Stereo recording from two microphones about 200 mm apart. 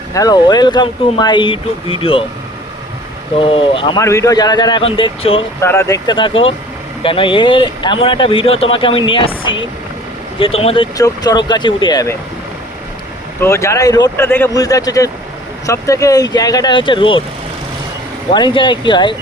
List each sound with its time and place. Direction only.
0.1 s speech: 20° left (ahead or behind)
3.3 s speech: 25° left (ahead or behind)
5.5 s speech: 15° left (ahead or behind)
10.9 s speech: 20° left (ahead or behind)
13.4 s speech: 15° left (ahead or behind)
18.3 s speech: 25° left (ahead or behind)